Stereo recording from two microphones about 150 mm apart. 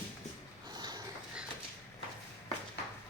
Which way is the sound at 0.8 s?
25° right (ahead or behind).